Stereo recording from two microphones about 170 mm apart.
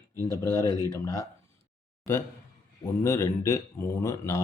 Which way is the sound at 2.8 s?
20° left (ahead or behind).